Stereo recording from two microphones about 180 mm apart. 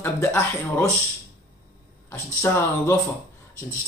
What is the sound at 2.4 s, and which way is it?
Speech, 15° left (ahead or behind).